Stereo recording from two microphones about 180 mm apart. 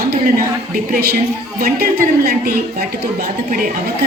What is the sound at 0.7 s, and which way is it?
A woman's voice, 55° right (ahead or behind).